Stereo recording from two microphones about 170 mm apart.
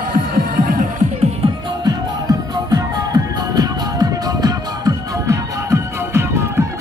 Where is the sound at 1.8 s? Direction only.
25° right (ahead or behind).